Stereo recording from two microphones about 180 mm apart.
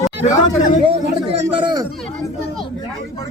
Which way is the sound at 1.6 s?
25° right (ahead or behind).